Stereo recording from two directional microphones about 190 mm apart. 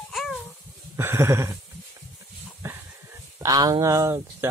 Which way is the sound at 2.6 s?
15° right (ahead or behind).